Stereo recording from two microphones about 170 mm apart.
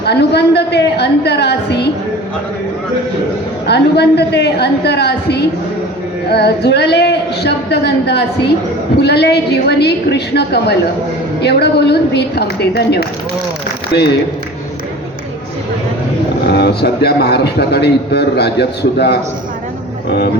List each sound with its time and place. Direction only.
0.0 s a man's voice: 75° left (ahead or behind)
3.7 s a man's voice: 75° left (ahead or behind)
16.5 s a man's voice: 75° left (ahead or behind)